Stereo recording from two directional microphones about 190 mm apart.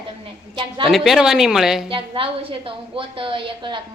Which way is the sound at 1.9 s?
25° right (ahead or behind).